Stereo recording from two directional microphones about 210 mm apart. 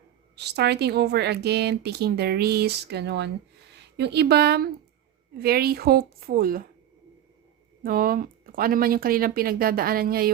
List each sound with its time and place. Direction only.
0.3 s a woman's voice: 55° right (ahead or behind)
7.9 s a woman's voice: 45° right (ahead or behind)